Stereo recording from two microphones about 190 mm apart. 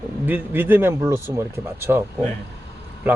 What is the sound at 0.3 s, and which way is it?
Speech, 10° right (ahead or behind).